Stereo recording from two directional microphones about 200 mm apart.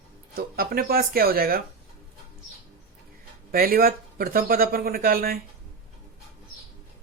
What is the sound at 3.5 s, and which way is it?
Speech, 45° right (ahead or behind).